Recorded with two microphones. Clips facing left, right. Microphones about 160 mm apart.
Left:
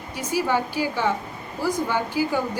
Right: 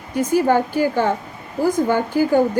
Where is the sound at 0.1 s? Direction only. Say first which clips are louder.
Right 7 dB; 50° right (ahead or behind).